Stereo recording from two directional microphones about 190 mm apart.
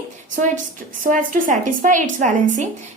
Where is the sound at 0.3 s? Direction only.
40° right (ahead or behind).